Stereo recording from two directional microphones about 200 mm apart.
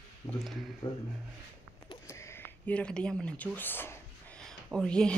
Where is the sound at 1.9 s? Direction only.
15° left (ahead or behind).